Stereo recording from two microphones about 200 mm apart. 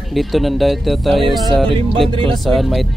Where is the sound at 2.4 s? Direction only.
Centre (ahead or behind).